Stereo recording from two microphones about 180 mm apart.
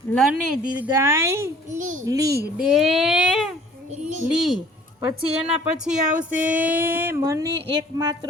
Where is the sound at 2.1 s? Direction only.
20° right (ahead or behind).